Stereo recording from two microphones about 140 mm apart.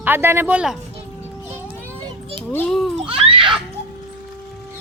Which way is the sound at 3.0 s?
40° right (ahead or behind).